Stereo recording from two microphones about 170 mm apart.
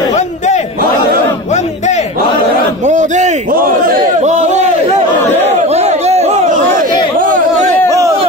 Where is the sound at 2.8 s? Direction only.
45° right (ahead or behind).